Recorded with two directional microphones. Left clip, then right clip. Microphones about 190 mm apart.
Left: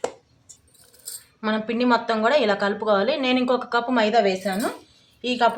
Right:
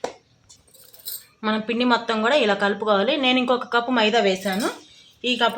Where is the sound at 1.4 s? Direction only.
15° right (ahead or behind).